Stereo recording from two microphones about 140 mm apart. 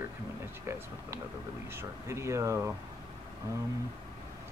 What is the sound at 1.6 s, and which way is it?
Speech, 20° right (ahead or behind).